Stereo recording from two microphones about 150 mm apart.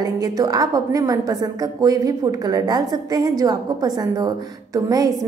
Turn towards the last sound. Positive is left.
turn(degrees=-25)  # may be behind; listen again after turning